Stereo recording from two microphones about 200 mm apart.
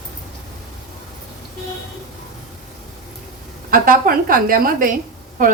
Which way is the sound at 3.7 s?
45° right (ahead or behind).